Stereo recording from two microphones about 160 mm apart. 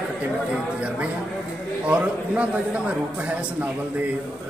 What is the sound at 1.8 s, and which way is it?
A man's voice, 10° right (ahead or behind).